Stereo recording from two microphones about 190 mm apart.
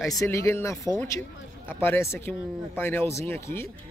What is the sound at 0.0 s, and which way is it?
Speech, 15° left (ahead or behind).